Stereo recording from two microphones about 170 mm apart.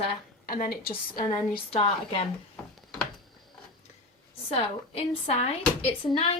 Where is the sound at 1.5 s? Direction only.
35° left (ahead or behind).